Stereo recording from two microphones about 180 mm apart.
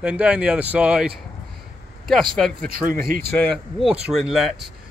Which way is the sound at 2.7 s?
55° right (ahead or behind).